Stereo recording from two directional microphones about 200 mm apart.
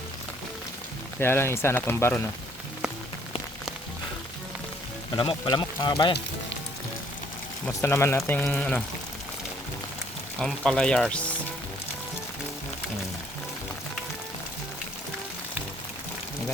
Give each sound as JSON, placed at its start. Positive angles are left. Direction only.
{"t": 1.2, "sound": "speech", "side_deg": 10}
{"t": 5.1, "sound": "speech", "side_deg": 25}
{"t": 7.7, "sound": "speech", "side_deg": 15}
{"t": 10.3, "sound": "speech", "side_deg": 5}